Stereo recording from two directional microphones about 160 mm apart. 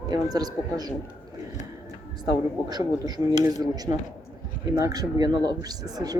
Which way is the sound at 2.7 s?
25° right (ahead or behind).